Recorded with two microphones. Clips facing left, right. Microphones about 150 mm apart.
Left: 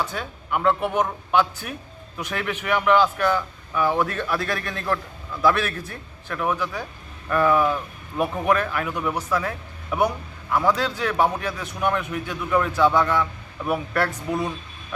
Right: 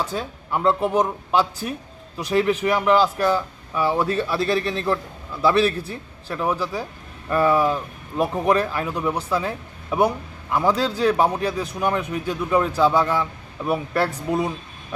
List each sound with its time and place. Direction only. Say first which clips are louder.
0.0 s speech: right 2 dB; 35° right (ahead or behind)
13.1 s a man's voice: even; 10° right (ahead or behind)
13.7 s speech: right 2 dB; 25° right (ahead or behind)